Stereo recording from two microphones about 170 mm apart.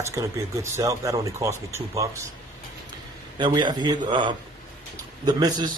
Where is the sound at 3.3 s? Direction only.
25° right (ahead or behind).